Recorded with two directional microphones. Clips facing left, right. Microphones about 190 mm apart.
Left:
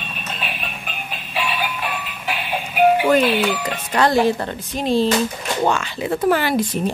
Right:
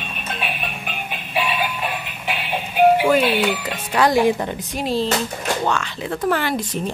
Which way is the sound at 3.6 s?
5° right (ahead or behind).